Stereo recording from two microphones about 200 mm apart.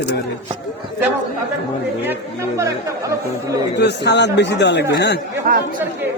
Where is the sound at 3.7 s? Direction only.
60° left (ahead or behind).